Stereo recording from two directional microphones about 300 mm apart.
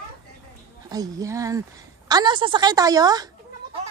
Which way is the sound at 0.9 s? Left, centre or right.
Centre.